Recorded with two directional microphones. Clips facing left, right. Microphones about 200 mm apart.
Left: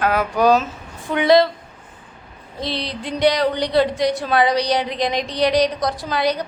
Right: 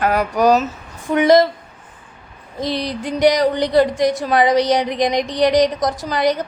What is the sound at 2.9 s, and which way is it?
Speech, 20° right (ahead or behind).